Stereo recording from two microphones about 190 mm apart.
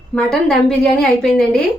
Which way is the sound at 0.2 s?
5° left (ahead or behind).